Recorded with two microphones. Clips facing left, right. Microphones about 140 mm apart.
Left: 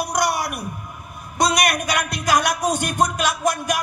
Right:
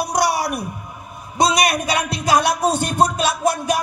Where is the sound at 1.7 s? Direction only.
30° right (ahead or behind).